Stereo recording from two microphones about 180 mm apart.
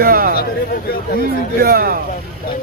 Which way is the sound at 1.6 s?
55° right (ahead or behind).